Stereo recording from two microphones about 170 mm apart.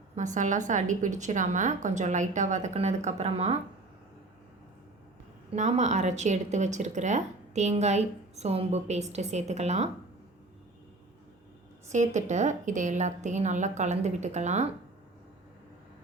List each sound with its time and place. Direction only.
0.2 s a woman's voice: 45° right (ahead or behind)
5.5 s speech: 45° right (ahead or behind)
11.9 s a woman's voice: 45° right (ahead or behind)